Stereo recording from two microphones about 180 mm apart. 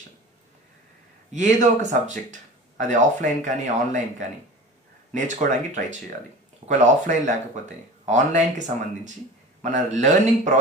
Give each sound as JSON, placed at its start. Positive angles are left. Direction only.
{"t": 1.3, "sound": "speech", "side_deg": -40}